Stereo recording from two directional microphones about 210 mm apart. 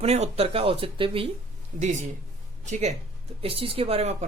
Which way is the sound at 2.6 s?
35° right (ahead or behind).